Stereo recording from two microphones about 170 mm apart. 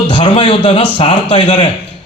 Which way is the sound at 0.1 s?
30° left (ahead or behind).